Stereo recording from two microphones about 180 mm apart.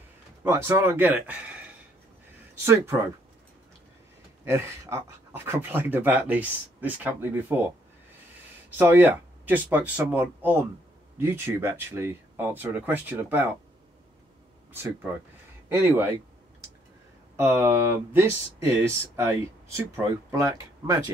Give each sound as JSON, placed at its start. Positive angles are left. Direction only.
{"t": 0.4, "sound": "speech", "side_deg": -15}
{"t": 2.6, "sound": "speech", "side_deg": -15}
{"t": 4.5, "sound": "speech", "side_deg": -15}
{"t": 8.6, "sound": "speech", "side_deg": -10}
{"t": 15.7, "sound": "speech", "side_deg": -10}
{"t": 17.4, "sound": "speech", "side_deg": -15}